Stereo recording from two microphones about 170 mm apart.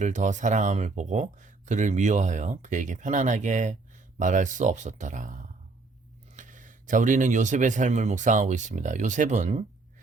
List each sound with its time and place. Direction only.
0.0 s speech: 45° right (ahead or behind)